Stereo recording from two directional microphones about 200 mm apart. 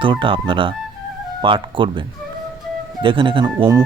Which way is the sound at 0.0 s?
25° right (ahead or behind).